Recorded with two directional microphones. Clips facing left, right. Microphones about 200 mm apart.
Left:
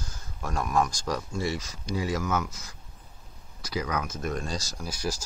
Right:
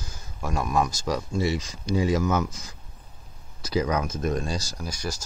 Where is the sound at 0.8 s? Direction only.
5° right (ahead or behind); by 4.1 s 25° right (ahead or behind).